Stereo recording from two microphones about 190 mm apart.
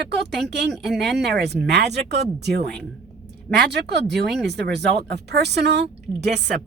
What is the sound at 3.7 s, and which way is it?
Speech, 65° right (ahead or behind).